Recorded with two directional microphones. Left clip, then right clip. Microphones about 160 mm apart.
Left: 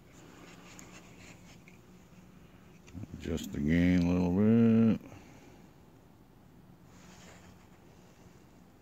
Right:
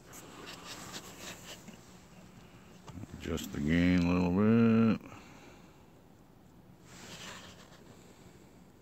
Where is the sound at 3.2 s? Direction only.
35° left (ahead or behind).